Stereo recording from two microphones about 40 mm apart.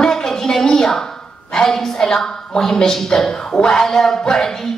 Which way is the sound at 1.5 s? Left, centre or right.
Centre.